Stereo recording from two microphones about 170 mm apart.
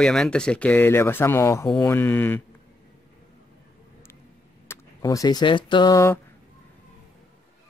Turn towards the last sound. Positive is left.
turn(degrees=15)  # may be behind; listen again after turning